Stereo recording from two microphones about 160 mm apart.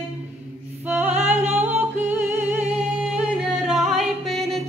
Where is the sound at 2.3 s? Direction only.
10° right (ahead or behind).